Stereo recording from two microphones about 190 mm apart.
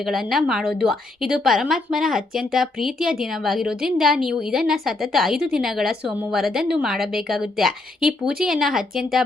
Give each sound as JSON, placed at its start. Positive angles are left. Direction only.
{"t": 0.0, "sound": "a woman's voice", "side_deg": 0}